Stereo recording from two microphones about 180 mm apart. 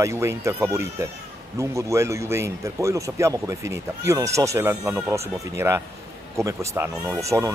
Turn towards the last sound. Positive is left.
turn(degrees=-15)  # may be behind; listen again after turning